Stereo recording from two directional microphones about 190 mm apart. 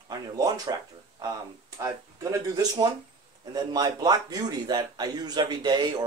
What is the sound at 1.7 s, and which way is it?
A man's voice, 15° right (ahead or behind).